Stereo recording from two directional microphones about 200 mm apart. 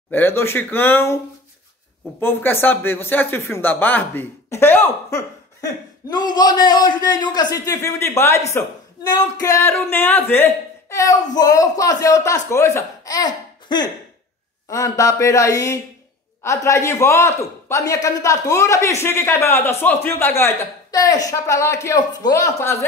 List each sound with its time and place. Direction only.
0.1 s a man's voice: 10° left (ahead or behind)